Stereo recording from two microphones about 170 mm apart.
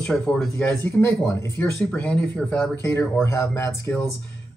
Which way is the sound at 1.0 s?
15° left (ahead or behind).